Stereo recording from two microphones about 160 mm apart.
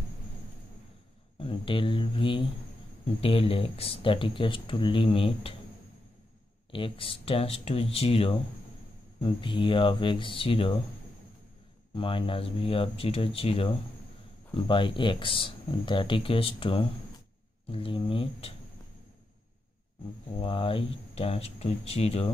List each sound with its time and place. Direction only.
1.4 s speech: 35° left (ahead or behind)
6.7 s speech: 35° left (ahead or behind)
11.9 s speech: 30° left (ahead or behind)
20.3 s speech: 35° left (ahead or behind)